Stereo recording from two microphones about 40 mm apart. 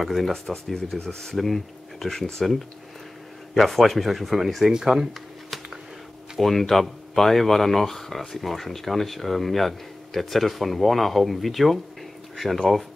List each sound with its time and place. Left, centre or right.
0.0 s speech: centre
0.7 s speech: centre
3.5 s speech: centre
4.7 s speech: centre
6.3 s speech: centre